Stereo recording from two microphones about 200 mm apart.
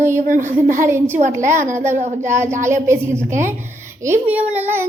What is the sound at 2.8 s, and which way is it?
A child's voice, 15° right (ahead or behind).